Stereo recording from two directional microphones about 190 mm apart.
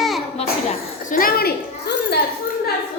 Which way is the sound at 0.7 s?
50° left (ahead or behind).